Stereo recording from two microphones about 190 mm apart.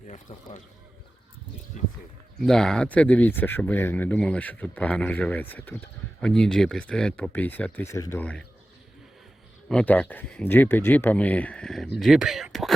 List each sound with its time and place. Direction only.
0.1 s speech: 40° left (ahead or behind)
2.4 s speech: 5° left (ahead or behind)
9.6 s speech: 5° left (ahead or behind)